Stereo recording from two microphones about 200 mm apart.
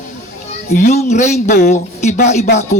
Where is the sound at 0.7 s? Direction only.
40° left (ahead or behind).